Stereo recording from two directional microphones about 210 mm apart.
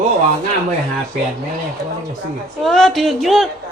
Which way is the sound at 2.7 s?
Centre (ahead or behind).